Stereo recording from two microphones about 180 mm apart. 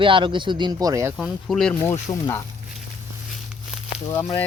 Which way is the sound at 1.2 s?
Centre (ahead or behind).